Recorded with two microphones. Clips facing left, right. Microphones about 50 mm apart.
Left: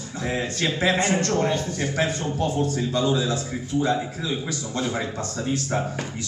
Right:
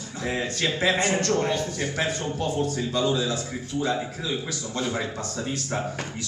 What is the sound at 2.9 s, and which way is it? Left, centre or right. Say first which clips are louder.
Speech: left 1 dB; centre.